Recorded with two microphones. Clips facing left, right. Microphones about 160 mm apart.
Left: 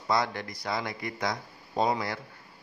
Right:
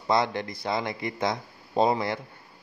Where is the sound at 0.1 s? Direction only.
25° right (ahead or behind).